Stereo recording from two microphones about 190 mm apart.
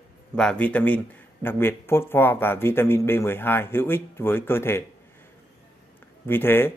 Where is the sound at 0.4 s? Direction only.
5° left (ahead or behind).